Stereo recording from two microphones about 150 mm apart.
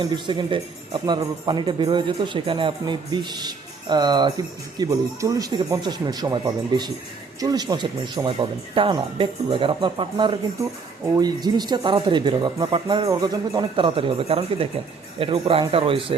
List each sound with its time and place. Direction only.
0.0 s speech: 30° right (ahead or behind)